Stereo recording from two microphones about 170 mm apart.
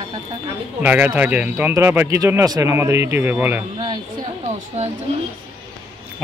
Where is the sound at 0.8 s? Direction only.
10° right (ahead or behind).